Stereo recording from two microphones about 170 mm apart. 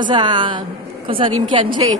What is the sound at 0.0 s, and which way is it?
A woman's voice, 25° right (ahead or behind).